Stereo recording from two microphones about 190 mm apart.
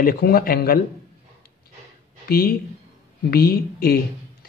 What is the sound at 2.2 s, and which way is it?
Speech, 55° left (ahead or behind).